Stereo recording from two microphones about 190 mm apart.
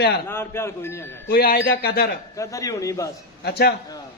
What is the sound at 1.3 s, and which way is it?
Speech, 55° left (ahead or behind).